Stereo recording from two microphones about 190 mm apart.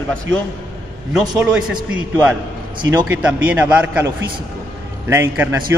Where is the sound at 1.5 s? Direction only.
5° right (ahead or behind).